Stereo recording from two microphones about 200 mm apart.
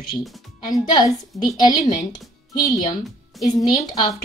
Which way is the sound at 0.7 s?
20° left (ahead or behind).